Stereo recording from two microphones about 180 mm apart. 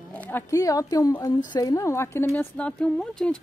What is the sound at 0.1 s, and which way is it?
Speech, 10° left (ahead or behind).